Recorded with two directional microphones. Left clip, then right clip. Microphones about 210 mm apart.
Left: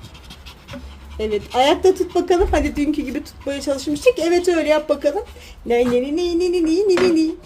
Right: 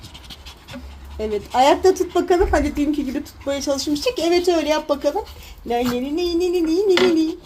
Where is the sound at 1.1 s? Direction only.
Centre (ahead or behind).